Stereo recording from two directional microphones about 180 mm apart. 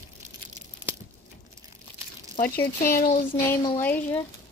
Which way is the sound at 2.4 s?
55° left (ahead or behind).